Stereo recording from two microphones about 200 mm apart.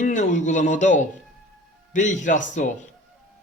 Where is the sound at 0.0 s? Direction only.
40° left (ahead or behind).